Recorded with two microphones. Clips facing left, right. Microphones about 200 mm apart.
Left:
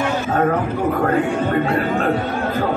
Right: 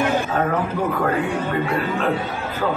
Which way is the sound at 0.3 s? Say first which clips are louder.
Left 4 dB; 45° left (ahead or behind).